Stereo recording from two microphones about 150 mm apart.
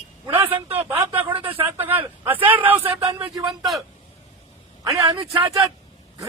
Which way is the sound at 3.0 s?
25° right (ahead or behind).